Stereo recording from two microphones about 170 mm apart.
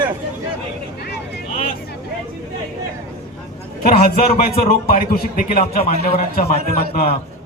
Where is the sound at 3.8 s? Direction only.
45° left (ahead or behind).